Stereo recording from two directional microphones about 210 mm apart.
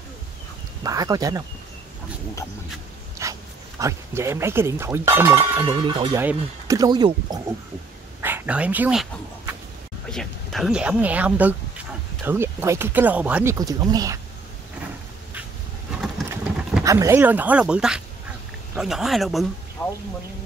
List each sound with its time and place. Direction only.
0.8 s speech: 15° right (ahead or behind)
3.2 s dog: 15° right (ahead or behind)
3.8 s speech: 15° right (ahead or behind)
5.7 s speech: 20° right (ahead or behind)
8.2 s speech: 10° right (ahead or behind)
10.0 s speech: centre (ahead or behind); by 14.2 s 15° right (ahead or behind)
16.3 s vehicle: 5° right (ahead or behind)
16.8 s speech: 15° right (ahead or behind); by 19.9 s 10° left (ahead or behind)